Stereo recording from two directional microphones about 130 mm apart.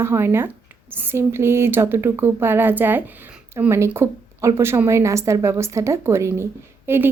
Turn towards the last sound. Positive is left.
turn(degrees=-15)  # may be behind; listen again after turning